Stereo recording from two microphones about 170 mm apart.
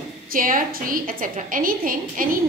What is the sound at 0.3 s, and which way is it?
A woman's voice, 55° right (ahead or behind).